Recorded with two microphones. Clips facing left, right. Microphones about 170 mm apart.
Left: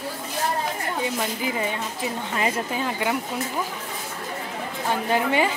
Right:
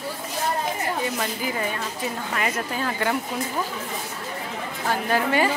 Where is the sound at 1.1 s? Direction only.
20° left (ahead or behind).